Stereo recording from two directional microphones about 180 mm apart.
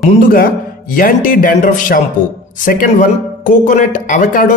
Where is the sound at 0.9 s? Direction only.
50° left (ahead or behind).